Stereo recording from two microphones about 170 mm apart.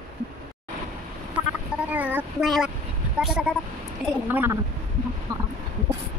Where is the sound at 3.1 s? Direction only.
5° right (ahead or behind).